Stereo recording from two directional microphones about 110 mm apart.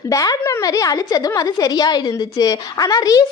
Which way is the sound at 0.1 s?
30° left (ahead or behind).